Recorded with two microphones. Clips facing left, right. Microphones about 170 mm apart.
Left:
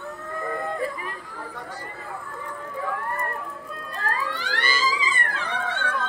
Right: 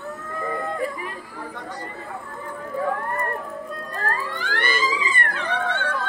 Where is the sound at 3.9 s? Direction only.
50° right (ahead or behind).